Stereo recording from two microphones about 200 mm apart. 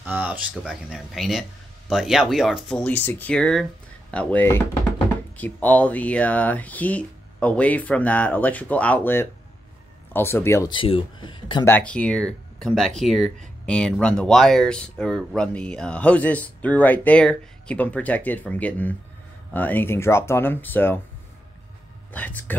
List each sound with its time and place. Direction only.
0.0 s speech: 10° right (ahead or behind); by 11.6 s 25° left (ahead or behind)
11.6 s speech: 10° left (ahead or behind)
22.1 s speech: 10° left (ahead or behind)